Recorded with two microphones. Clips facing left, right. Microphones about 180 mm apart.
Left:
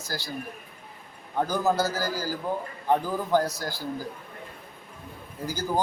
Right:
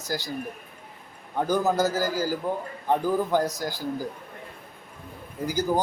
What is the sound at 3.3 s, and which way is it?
Speech, 15° right (ahead or behind).